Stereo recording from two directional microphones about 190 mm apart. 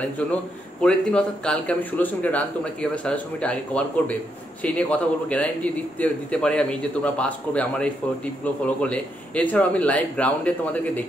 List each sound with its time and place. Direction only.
0.3 s speech: 5° left (ahead or behind)